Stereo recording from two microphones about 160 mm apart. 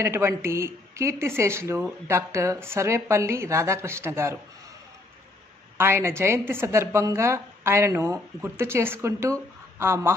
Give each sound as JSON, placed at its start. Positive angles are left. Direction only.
{"t": 0.0, "sound": "a woman's voice", "side_deg": -15}
{"t": 5.8, "sound": "a woman's voice", "side_deg": -15}